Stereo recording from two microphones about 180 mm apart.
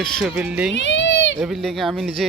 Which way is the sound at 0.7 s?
85° left.